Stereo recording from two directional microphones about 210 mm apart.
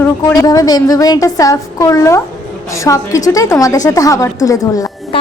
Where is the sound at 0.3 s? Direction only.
20° left (ahead or behind).